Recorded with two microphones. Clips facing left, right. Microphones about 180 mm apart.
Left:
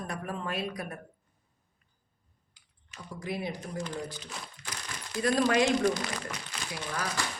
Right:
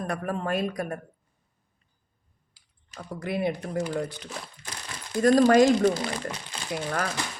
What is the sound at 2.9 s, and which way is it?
Speech, 60° right (ahead or behind).